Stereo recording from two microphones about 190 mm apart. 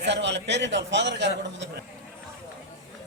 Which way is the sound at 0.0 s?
65° right (ahead or behind).